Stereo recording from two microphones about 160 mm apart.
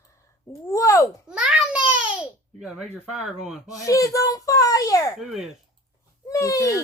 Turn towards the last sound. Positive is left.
turn(degrees=20)  # may be behind; listen again after turning